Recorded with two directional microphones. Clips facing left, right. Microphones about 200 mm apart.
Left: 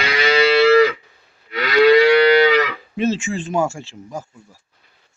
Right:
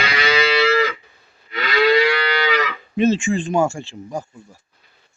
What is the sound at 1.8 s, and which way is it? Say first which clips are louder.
Moo: left 5 dB; 45° left (ahead or behind).